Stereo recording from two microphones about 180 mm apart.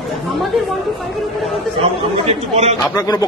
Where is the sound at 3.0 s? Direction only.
20° left (ahead or behind).